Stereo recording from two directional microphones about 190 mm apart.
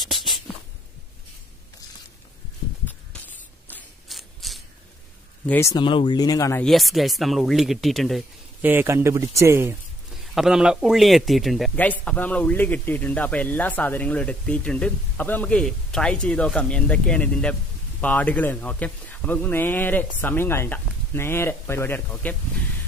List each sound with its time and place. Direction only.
0.0 s a sound: centre (ahead or behind)
3.6 s mechanisms: 10° left (ahead or behind)
4.2 s a sound: centre (ahead or behind)
5.5 s speech: 15° left (ahead or behind)
6.6 s speech: centre (ahead or behind)
8.6 s speech: 10° right (ahead or behind)
10.1 s speech: centre (ahead or behind)